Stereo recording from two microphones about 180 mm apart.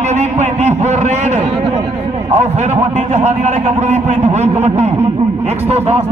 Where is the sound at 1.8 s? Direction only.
25° right (ahead or behind).